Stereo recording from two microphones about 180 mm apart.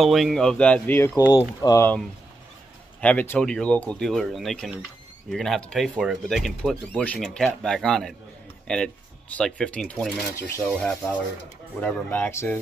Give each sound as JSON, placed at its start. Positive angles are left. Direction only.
{"t": 0.0, "sound": "speech", "side_deg": 0}
{"t": 3.0, "sound": "speech", "side_deg": 10}